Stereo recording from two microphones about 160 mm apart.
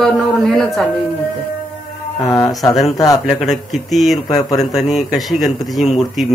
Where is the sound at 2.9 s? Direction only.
20° left (ahead or behind).